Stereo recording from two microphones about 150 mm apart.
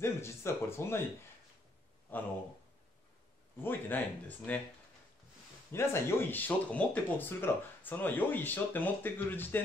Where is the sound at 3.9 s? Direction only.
15° left (ahead or behind).